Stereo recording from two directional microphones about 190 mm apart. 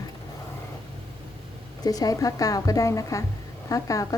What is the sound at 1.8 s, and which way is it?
A woman's voice, 20° left (ahead or behind).